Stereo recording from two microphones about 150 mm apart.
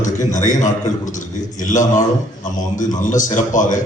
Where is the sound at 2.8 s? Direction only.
60° left (ahead or behind).